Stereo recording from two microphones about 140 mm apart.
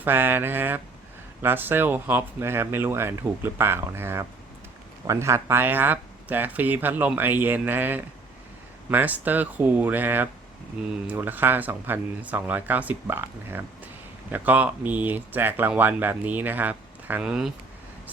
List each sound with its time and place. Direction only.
0.0 s speech: 15° right (ahead or behind)